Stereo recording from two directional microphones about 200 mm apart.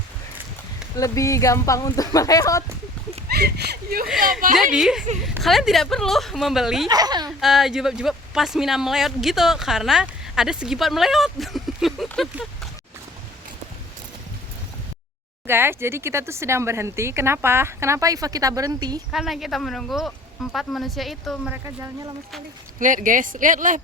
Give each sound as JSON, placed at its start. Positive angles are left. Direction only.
{"t": 0.9, "sound": "speech", "side_deg": 15}
{"t": 3.2, "sound": "speech", "side_deg": -55}
{"t": 4.7, "sound": "speech", "side_deg": -5}
{"t": 6.8, "sound": "speech", "side_deg": -20}
{"t": 7.3, "sound": "speech", "side_deg": 0}
{"t": 15.4, "sound": "speech", "side_deg": -10}
{"t": 19.1, "sound": "speech", "side_deg": 0}
{"t": 21.6, "sound": "speech", "side_deg": -15}
{"t": 22.8, "sound": "speech", "side_deg": -40}